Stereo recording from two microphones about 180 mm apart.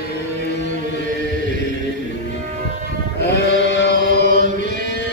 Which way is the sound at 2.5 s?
40° right (ahead or behind).